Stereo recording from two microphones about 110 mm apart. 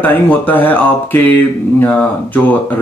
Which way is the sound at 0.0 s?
15° left (ahead or behind).